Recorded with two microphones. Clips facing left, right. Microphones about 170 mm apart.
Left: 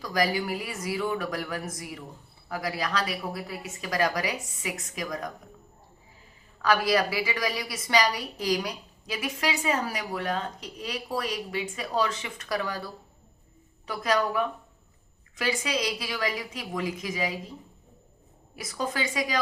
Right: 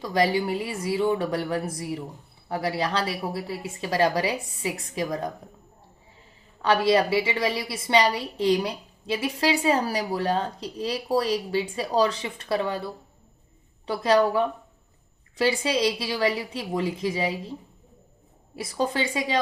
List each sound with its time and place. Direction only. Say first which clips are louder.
0.0 s a woman's voice: right 4 dB; 25° right (ahead or behind)
6.6 s a woman's voice: right 3 dB; 25° right (ahead or behind)
18.5 s a woman's voice: right 5 dB; 30° right (ahead or behind)